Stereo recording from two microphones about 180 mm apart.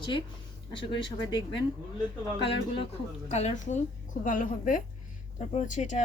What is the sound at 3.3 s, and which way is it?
A woman's voice, 40° left (ahead or behind).